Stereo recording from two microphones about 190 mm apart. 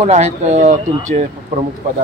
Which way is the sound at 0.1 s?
35° right (ahead or behind).